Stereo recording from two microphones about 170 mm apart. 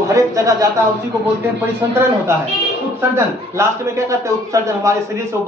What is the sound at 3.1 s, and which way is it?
A man's voice, 15° right (ahead or behind).